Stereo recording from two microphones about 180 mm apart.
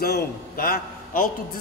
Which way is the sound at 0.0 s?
55° left (ahead or behind).